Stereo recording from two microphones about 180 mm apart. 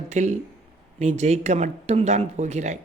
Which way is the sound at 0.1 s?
40° right (ahead or behind).